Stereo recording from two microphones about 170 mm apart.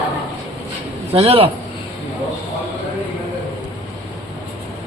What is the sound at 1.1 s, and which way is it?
Speech, 35° right (ahead or behind).